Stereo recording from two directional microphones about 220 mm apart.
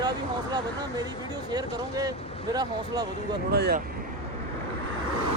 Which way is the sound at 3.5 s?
45° right (ahead or behind).